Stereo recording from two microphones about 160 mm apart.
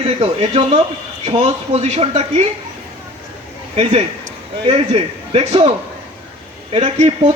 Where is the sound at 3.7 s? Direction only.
40° right (ahead or behind).